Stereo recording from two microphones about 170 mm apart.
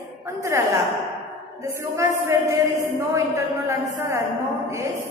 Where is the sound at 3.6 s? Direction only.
20° right (ahead or behind).